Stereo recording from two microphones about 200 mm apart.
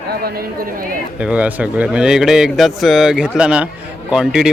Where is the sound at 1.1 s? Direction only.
5° right (ahead or behind).